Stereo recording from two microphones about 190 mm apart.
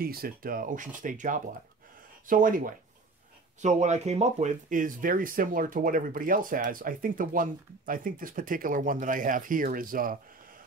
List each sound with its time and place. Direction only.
0.0 s speech: 50° right (ahead or behind)